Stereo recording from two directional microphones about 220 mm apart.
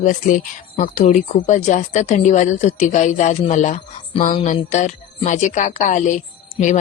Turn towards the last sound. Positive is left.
turn(degrees=35)  # may be behind; listen again after turning